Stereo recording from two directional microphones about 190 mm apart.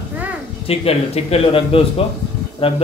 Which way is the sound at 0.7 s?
30° left (ahead or behind).